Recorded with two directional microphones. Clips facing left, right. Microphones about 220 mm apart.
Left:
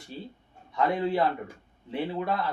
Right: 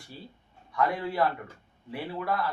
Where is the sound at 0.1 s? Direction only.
20° left (ahead or behind).